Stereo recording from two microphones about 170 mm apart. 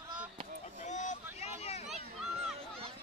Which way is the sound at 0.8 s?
45° left (ahead or behind).